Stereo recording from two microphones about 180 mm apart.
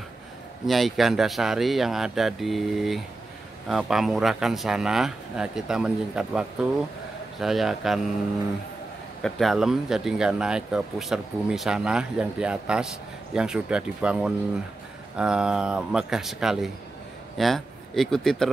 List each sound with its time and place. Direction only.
0.7 s speech: centre (ahead or behind)
9.2 s speech: centre (ahead or behind)